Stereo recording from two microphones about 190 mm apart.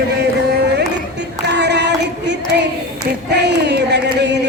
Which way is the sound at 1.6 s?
65° right (ahead or behind).